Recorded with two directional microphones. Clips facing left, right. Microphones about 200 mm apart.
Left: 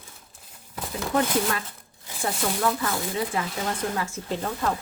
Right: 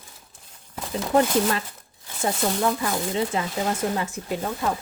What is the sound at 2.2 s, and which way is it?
A woman's voice, 20° right (ahead or behind).